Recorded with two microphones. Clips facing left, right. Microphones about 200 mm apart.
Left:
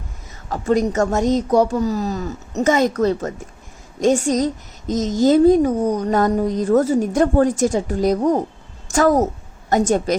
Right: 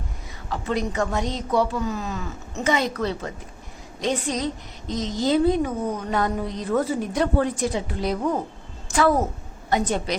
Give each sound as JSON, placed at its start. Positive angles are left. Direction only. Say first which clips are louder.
{"t": 0.5, "sound": "a woman's voice", "louder": "left 7 dB", "side_deg": 45}